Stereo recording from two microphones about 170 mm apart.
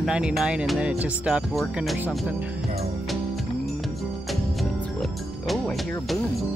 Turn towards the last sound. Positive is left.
turn(degrees=0)  # may be behind; listen again after turning